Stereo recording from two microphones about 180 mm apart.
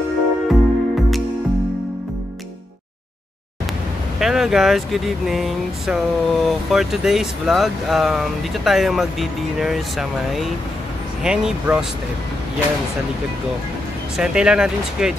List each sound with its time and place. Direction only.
0.5 s music: centre (ahead or behind)
4.2 s speech: centre (ahead or behind)
14.1 s speech: 5° right (ahead or behind)